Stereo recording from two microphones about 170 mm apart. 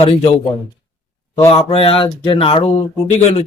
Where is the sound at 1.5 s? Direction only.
35° left (ahead or behind).